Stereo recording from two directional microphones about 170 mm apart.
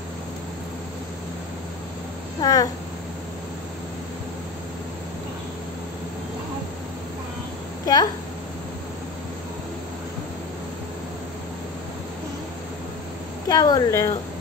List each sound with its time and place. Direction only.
2.4 s a woman's voice: 20° left (ahead or behind)
7.8 s speech: 20° left (ahead or behind)
13.5 s a woman's voice: 20° left (ahead or behind)